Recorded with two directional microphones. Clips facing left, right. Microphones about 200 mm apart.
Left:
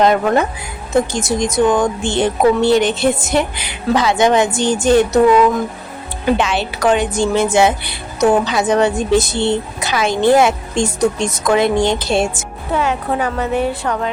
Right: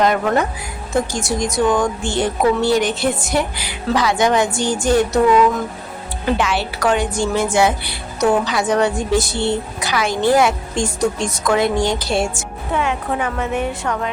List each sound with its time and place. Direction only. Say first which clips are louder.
0.0 s a woman's voice: left 3 dB; 25° left (ahead or behind)
6.3 s a woman's voice: left 2 dB; 20° left (ahead or behind)
12.7 s a woman's voice: left 3 dB; 40° left (ahead or behind)